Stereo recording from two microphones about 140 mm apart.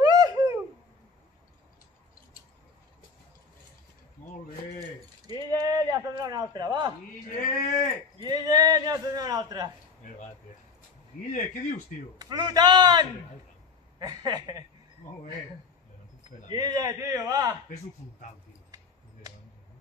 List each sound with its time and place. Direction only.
0.0 s babbling: 30° right (ahead or behind)
4.7 s keys jangling: 25° right (ahead or behind)
7.2 s speech: 70° left (ahead or behind)
8.2 s a man's voice: 30° right (ahead or behind)
11.3 s speech: 65° left (ahead or behind)
12.2 s a man's voice: 30° right (ahead or behind)
16.4 s a man's voice: 25° right (ahead or behind)